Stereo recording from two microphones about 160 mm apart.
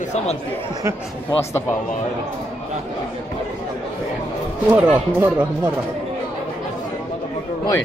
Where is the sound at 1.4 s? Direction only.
15° left (ahead or behind).